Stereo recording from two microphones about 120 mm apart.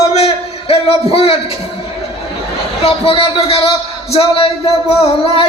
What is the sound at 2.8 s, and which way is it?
Music, 50° left (ahead or behind).